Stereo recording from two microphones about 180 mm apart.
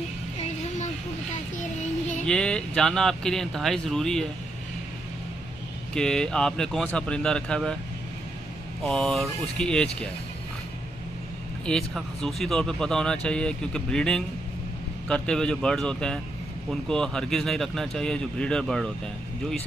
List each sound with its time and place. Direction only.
1.3 s child singing: 40° left (ahead or behind)
2.2 s speech: 5° left (ahead or behind)
5.9 s speech: 5° left (ahead or behind)
8.8 s speech: 5° left (ahead or behind)
11.6 s speech: 5° left (ahead or behind)